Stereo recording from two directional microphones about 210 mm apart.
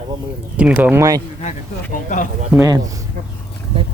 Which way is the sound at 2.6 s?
15° right (ahead or behind).